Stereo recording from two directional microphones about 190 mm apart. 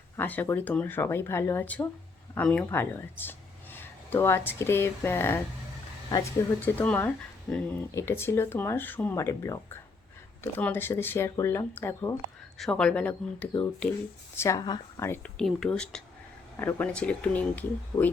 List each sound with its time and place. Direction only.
0.2 s speech: 10° left (ahead or behind)
6.7 s speech: 10° left (ahead or behind)